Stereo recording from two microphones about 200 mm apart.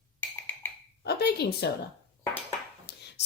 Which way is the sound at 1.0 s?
55° left (ahead or behind).